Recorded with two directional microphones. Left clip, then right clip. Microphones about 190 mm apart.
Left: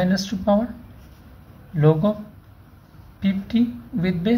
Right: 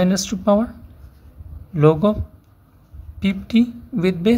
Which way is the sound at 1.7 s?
45° right (ahead or behind).